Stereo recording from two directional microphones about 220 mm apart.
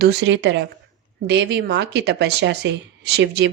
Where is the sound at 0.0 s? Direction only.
50° right (ahead or behind).